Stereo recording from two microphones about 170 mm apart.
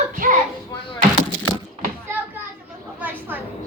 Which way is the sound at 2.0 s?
10° right (ahead or behind).